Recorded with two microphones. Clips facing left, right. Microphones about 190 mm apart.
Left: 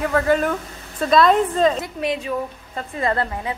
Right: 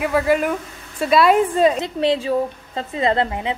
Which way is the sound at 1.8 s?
30° right (ahead or behind).